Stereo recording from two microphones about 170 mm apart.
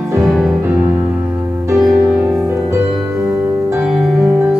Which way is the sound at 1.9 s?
15° right (ahead or behind).